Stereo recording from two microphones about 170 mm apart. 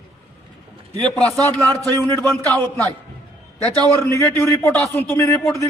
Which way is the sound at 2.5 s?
10° left (ahead or behind).